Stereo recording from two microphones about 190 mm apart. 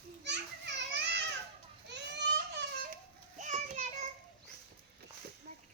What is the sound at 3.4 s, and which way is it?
Child singing, 40° right (ahead or behind).